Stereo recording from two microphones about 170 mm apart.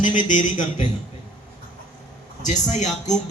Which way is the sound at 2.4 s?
45° left (ahead or behind).